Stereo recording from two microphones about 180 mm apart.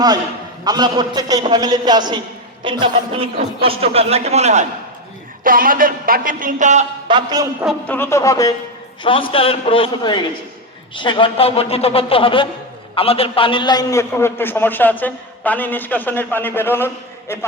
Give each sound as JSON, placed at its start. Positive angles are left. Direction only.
{"t": 0.6, "sound": "a man's voice", "side_deg": -20}
{"t": 5.4, "sound": "a man's voice", "side_deg": -50}
{"t": 7.1, "sound": "a man's voice", "side_deg": -25}
{"t": 7.9, "sound": "a man's voice", "side_deg": 10}
{"t": 9.0, "sound": "a man's voice", "side_deg": 30}